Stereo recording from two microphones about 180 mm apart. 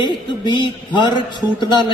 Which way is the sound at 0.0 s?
25° left (ahead or behind).